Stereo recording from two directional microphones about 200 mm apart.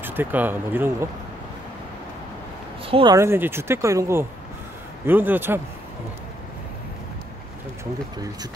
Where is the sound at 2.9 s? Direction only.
25° right (ahead or behind).